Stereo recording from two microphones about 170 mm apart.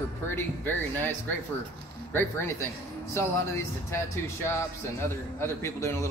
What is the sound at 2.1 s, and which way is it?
A man's voice, 15° left (ahead or behind).